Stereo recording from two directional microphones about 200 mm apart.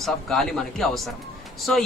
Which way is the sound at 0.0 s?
Centre (ahead or behind).